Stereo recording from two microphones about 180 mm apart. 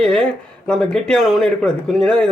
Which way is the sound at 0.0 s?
5° left (ahead or behind).